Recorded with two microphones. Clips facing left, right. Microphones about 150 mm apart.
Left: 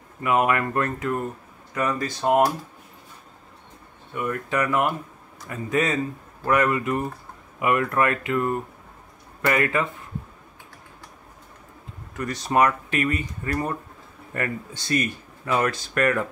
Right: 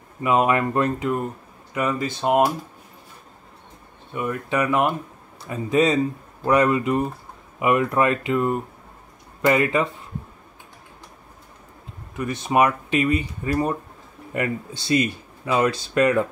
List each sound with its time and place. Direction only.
0.2 s speech: 20° right (ahead or behind)
4.1 s speech: 20° right (ahead or behind)
12.2 s speech: 15° right (ahead or behind)